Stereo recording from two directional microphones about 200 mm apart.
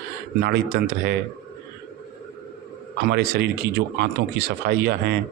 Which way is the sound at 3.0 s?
55° right (ahead or behind).